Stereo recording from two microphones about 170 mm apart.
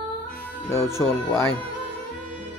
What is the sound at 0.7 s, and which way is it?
Speech, 15° left (ahead or behind).